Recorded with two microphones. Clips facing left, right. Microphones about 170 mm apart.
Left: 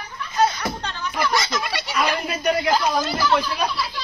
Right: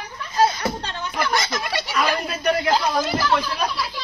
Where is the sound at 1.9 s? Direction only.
5° left (ahead or behind).